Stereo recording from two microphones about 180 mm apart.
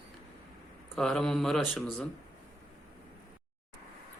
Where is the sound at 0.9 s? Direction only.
5° left (ahead or behind).